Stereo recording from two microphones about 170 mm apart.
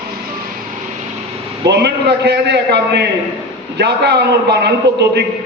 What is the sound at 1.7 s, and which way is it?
A man's voice, 80° right.